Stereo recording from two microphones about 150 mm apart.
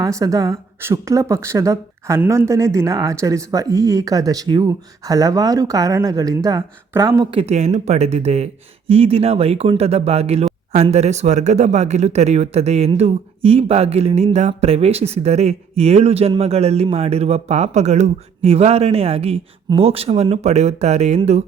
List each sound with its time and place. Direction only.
0.0 s a woman's voice: 20° right (ahead or behind)
7.3 s speech: 40° right (ahead or behind)